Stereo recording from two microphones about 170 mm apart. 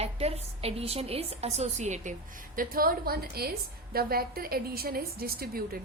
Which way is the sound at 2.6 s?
60° right (ahead or behind).